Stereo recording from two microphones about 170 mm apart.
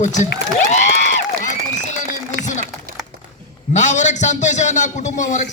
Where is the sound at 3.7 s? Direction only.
45° left (ahead or behind).